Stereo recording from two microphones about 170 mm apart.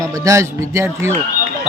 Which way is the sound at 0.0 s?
20° right (ahead or behind).